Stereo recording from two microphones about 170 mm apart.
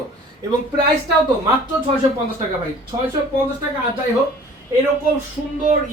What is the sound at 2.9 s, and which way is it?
Speech, 25° right (ahead or behind).